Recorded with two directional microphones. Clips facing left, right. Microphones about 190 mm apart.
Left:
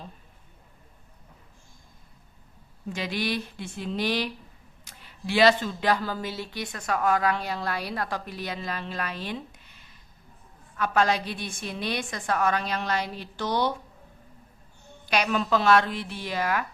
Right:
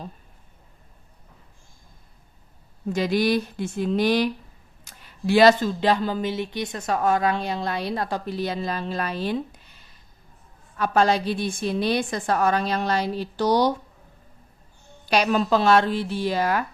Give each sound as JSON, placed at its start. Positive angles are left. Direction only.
{"t": 2.9, "sound": "speech", "side_deg": -40}
{"t": 5.8, "sound": "speech", "side_deg": -25}
{"t": 10.8, "sound": "a woman's voice", "side_deg": -35}
{"t": 15.0, "sound": "a woman's voice", "side_deg": -35}